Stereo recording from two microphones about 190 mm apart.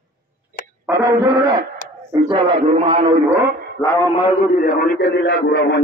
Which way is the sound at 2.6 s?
30° right (ahead or behind).